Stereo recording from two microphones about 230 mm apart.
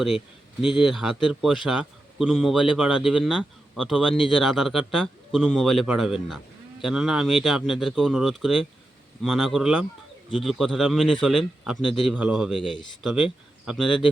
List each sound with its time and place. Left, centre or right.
0.6 s a man's voice: centre